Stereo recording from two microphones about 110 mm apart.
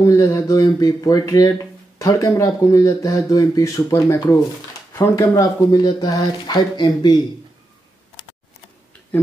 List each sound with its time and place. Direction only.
0.0 s speech: 30° left (ahead or behind)